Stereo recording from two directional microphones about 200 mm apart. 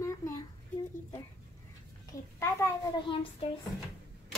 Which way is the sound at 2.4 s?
20° left (ahead or behind).